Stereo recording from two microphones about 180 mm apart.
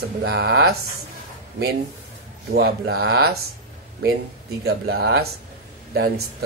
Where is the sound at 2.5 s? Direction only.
60° right (ahead or behind).